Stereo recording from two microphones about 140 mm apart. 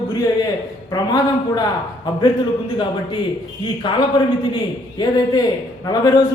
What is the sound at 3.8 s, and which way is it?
Speech, 35° left (ahead or behind).